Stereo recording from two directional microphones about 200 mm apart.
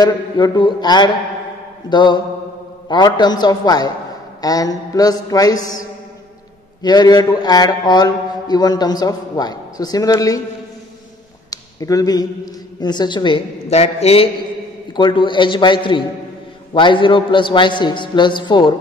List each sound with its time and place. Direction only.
0.0 s a man's voice: 20° left (ahead or behind)
11.5 s a sound: 20° left (ahead or behind)
12.8 s a man's voice: 20° left (ahead or behind)